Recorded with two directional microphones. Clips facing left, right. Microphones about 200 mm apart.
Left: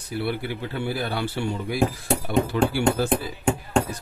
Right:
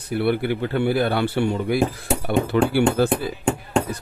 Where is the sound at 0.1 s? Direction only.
60° right (ahead or behind).